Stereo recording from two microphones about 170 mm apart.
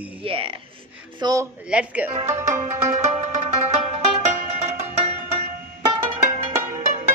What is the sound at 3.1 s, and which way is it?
Music, 40° right (ahead or behind).